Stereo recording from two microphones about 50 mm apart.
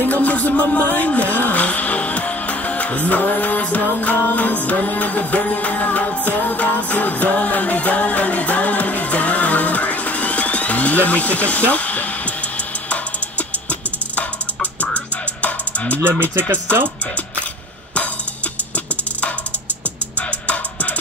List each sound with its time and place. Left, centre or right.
0.0 s music: left
16.0 s speech: right
20.2 s music: left